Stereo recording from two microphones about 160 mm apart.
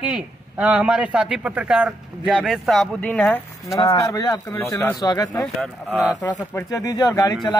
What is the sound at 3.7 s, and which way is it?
Speech, 20° left (ahead or behind).